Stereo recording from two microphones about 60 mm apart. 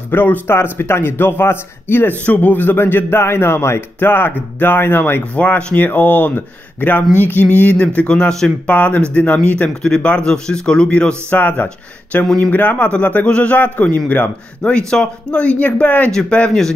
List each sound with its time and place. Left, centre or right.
0.1 s speech: left
5.8 s speech: left
8.1 s speech: centre
8.6 s speech: left
14.7 s speech: centre
16.1 s speech: centre